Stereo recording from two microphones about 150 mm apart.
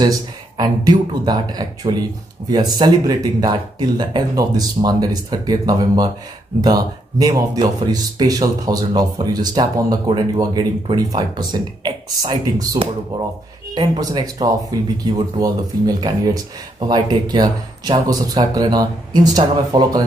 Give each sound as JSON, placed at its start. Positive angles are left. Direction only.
{"t": 0.0, "sound": "speech", "side_deg": -25}